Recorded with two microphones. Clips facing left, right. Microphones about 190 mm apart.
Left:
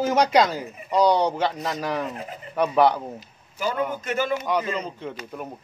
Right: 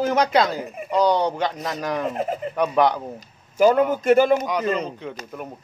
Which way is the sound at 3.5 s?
45° right (ahead or behind).